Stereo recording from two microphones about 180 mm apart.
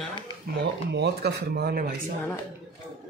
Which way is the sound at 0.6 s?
65° right (ahead or behind).